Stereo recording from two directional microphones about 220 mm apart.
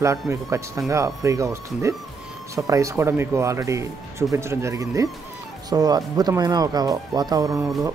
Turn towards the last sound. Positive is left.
turn(degrees=-15)  # may be behind; listen again after turning